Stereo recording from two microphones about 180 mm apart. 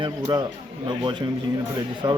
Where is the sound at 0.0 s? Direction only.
25° right (ahead or behind).